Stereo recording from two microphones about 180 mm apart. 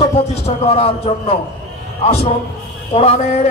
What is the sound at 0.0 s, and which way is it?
Speech, 35° left (ahead or behind).